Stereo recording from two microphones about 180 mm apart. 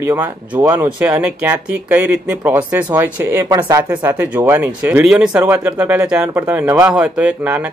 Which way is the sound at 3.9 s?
10° right (ahead or behind).